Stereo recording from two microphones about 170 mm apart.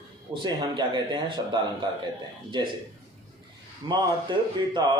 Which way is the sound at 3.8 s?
30° right (ahead or behind).